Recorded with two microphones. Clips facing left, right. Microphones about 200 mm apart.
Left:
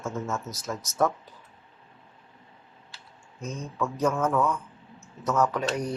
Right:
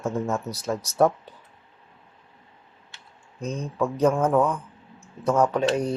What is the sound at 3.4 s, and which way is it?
Speech, 35° right (ahead or behind).